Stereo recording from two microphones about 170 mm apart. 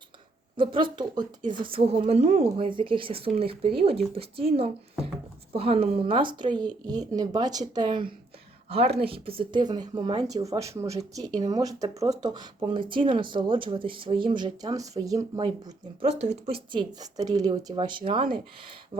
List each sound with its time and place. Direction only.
0.5 s speech: 30° right (ahead or behind)
16.0 s speech: 40° right (ahead or behind)